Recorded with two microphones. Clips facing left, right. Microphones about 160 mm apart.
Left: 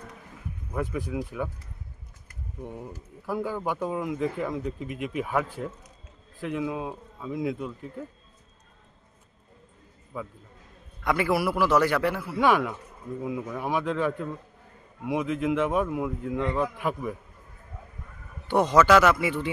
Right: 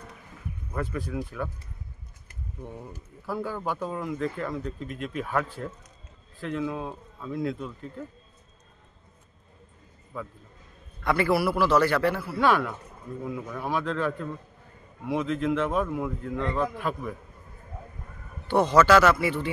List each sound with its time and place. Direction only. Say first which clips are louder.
0.7 s speech: left 1 dB; 15° left (ahead or behind)
2.6 s speech: left 3 dB; 10° left (ahead or behind)
10.1 s speech: left 1 dB; 10° left (ahead or behind)
18.5 s speech: even; 15° left (ahead or behind)